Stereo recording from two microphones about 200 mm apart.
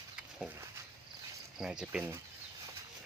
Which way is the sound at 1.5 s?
5° right (ahead or behind).